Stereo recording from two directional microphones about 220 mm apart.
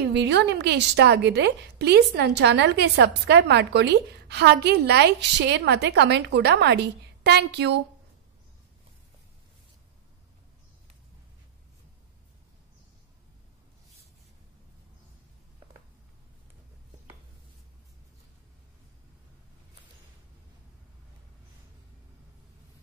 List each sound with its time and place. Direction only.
0.1 s a woman's voice: 50° right (ahead or behind)